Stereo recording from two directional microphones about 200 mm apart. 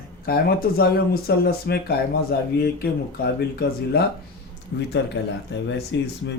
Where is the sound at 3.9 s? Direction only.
55° left (ahead or behind).